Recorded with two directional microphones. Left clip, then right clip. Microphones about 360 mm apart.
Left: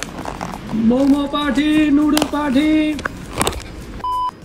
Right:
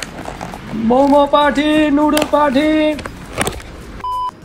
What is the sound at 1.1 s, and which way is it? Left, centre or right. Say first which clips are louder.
Speech: right 7 dB; centre.